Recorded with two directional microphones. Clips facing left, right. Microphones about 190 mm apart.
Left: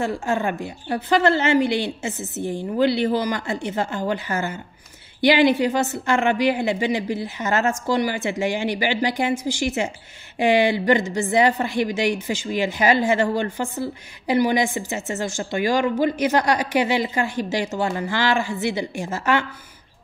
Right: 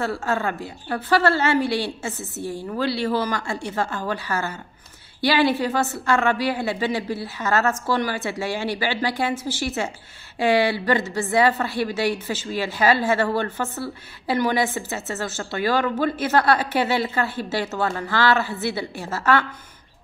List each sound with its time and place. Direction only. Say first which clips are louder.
0.0 s a woman's voice: left 1 dB; 15° left (ahead or behind)